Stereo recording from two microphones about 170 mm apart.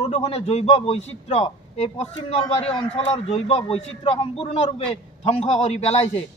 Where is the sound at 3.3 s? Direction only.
30° left (ahead or behind).